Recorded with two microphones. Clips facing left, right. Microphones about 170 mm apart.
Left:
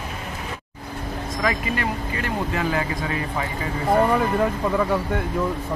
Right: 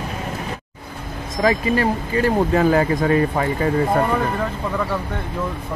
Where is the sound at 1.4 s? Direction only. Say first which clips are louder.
Right 7 dB; 30° right (ahead or behind).